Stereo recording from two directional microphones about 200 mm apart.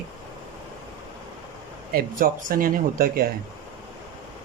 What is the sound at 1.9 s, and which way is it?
Speech, 45° right (ahead or behind).